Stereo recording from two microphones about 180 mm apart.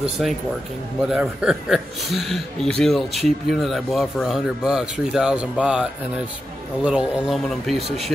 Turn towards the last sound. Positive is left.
turn(degrees=0)  # may be behind; listen again after turning